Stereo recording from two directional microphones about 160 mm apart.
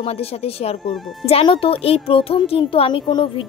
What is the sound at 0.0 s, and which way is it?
A woman's voice, 40° left (ahead or behind).